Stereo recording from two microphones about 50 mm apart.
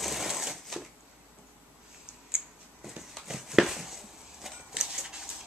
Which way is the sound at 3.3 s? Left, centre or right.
Centre.